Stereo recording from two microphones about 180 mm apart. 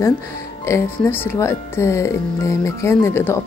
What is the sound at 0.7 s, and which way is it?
Speech, 15° left (ahead or behind).